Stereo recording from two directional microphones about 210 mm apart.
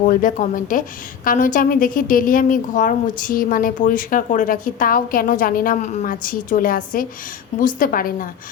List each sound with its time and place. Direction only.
0.1 s a woman's voice: 40° left (ahead or behind)